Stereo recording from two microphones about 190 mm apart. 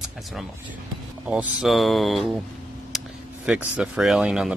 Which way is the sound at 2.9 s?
Centre (ahead or behind).